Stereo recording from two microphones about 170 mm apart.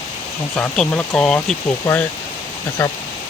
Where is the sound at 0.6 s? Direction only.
10° left (ahead or behind).